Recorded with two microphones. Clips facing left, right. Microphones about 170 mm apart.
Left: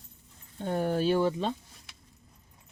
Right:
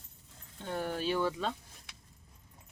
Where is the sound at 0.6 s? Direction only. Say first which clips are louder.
Left 7 dB; 45° left (ahead or behind).